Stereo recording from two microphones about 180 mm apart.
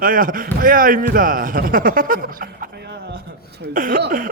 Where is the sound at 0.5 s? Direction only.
50° right (ahead or behind).